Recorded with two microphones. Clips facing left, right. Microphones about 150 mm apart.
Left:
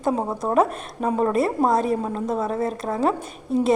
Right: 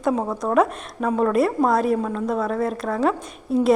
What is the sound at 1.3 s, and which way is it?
Speech, centre (ahead or behind).